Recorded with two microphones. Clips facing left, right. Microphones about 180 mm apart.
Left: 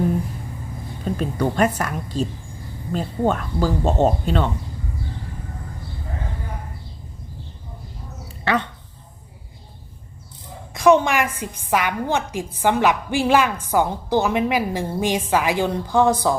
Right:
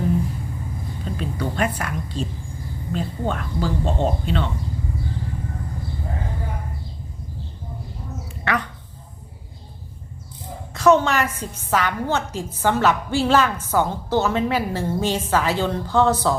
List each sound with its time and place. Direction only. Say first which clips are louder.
1.1 s a woman's voice: left 5 dB; 45° left (ahead or behind)
10.8 s a woman's voice: left 1 dB; 15° left (ahead or behind)